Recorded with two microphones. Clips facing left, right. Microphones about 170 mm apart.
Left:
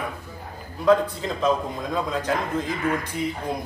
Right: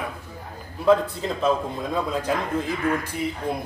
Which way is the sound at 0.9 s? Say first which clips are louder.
Even; 5° right (ahead or behind).